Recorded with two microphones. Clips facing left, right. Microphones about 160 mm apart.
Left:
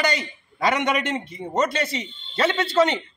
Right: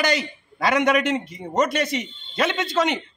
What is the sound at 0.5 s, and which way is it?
Speech, 5° right (ahead or behind).